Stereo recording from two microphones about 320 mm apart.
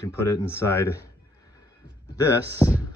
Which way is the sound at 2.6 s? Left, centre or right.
Centre.